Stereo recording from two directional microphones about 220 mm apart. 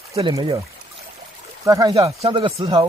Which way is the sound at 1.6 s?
15° right (ahead or behind).